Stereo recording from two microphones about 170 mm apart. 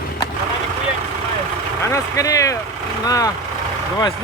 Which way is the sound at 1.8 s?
20° left (ahead or behind).